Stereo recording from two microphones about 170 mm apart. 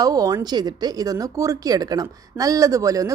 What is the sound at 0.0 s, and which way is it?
Speech, 20° right (ahead or behind).